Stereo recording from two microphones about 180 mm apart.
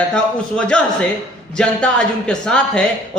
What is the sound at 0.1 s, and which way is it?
A man's voice, 5° left (ahead or behind).